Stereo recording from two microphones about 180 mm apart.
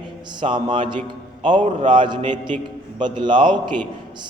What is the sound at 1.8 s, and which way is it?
A man's voice, 25° right (ahead or behind).